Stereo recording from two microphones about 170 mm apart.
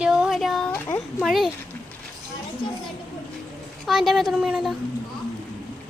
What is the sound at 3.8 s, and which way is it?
Speech, centre (ahead or behind).